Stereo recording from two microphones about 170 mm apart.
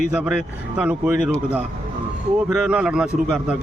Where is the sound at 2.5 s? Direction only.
5° right (ahead or behind).